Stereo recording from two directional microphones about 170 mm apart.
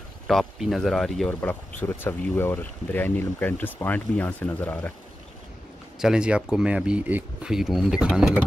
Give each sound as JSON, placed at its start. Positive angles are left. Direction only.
{"t": 0.3, "sound": "speech", "side_deg": 0}
{"t": 5.9, "sound": "speech", "side_deg": -5}